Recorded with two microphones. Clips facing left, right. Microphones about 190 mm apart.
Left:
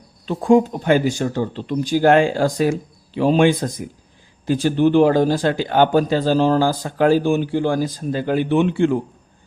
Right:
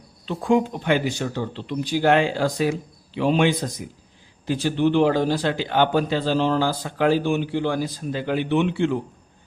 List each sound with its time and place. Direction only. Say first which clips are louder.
0.3 s speech: left 5 dB; 40° left (ahead or behind)